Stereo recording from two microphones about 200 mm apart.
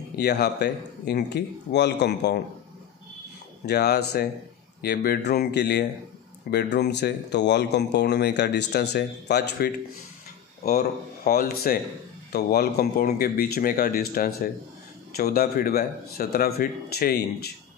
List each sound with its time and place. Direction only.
0.1 s speech: 55° left (ahead or behind)
3.6 s speech: 55° left (ahead or behind)